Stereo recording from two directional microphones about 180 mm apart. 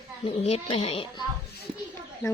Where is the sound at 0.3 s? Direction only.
35° left (ahead or behind).